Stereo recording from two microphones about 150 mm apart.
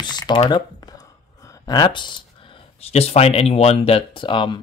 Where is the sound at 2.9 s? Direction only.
45° left (ahead or behind).